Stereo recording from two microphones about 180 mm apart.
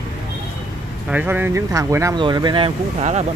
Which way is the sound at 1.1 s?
10° right (ahead or behind).